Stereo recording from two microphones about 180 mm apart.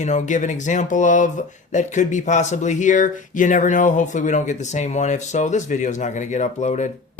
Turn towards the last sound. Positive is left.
turn(degrees=40)  # may be behind; listen again after turning